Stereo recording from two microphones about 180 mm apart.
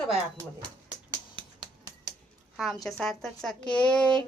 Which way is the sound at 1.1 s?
30° right (ahead or behind).